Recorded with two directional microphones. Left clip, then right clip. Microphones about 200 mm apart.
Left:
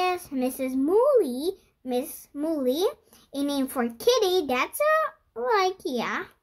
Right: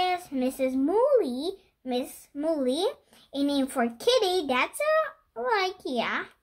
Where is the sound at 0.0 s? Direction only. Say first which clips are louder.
Left 1 dB; 45° left (ahead or behind).